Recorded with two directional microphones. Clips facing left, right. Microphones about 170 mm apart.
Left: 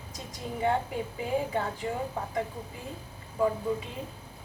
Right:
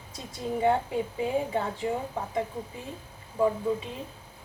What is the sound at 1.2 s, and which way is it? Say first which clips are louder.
Speech: even; 20° right (ahead or behind).